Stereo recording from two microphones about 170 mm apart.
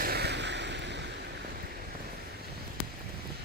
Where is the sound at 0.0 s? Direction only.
70° right (ahead or behind); by 1.3 s 85° right.